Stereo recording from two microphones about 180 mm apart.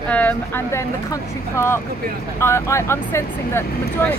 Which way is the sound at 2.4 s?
15° left (ahead or behind).